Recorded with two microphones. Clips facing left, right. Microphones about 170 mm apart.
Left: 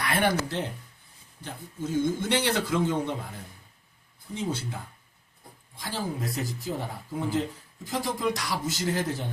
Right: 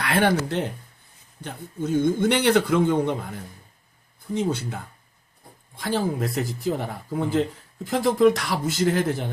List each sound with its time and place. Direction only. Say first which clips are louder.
0.0 s a man's voice: right 4 dB; 75° right (ahead or behind); by 3.2 s 55° right (ahead or behind)
4.4 s a man's voice: right 6 dB; 60° right (ahead or behind)